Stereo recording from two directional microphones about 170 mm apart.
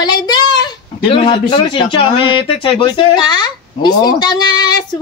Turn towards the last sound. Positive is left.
turn(degrees=25)  # may be behind; listen again after turning